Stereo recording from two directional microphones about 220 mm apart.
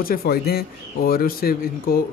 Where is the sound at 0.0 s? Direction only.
40° left (ahead or behind).